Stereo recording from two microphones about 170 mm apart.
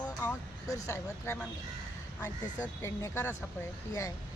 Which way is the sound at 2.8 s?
15° left (ahead or behind).